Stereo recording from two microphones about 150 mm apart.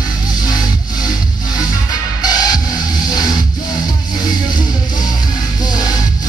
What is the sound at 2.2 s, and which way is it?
Music, 25° left (ahead or behind).